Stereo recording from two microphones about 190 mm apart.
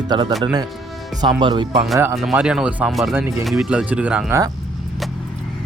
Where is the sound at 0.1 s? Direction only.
20° right (ahead or behind).